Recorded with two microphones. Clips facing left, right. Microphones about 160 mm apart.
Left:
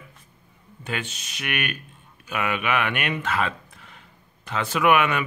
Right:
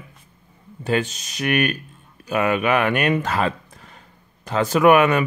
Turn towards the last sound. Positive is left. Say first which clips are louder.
# right 6 dB
turn(degrees=-40)  # may be behind; listen again after turning